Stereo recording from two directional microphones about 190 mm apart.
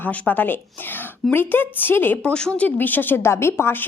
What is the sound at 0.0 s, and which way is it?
A woman's voice, 10° left (ahead or behind).